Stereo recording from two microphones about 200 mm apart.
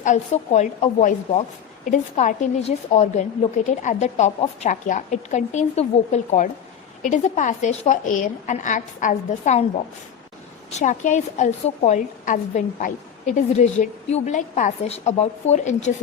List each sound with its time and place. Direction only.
0.0 s a woman's voice: 35° left (ahead or behind)
10.7 s a woman's voice: 35° left (ahead or behind)